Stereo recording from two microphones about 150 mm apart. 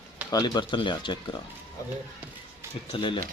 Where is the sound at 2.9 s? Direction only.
35° left (ahead or behind).